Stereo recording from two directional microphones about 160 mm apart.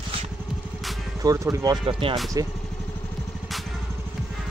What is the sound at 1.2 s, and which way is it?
Speech, 20° right (ahead or behind).